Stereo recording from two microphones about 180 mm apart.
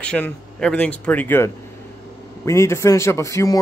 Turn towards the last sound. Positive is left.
turn(degrees=15)  # may be behind; listen again after turning